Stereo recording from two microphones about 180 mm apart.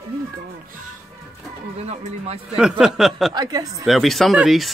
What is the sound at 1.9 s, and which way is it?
Speech, 35° right (ahead or behind).